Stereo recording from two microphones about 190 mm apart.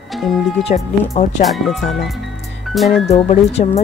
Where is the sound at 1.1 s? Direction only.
40° left (ahead or behind).